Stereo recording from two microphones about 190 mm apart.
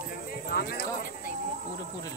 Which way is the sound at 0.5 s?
50° left (ahead or behind).